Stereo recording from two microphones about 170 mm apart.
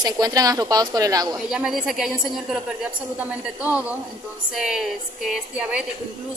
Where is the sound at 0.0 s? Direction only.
20° right (ahead or behind).